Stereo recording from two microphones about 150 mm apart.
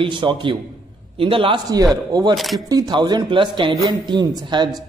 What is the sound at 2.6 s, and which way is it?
A man's voice, 25° right (ahead or behind).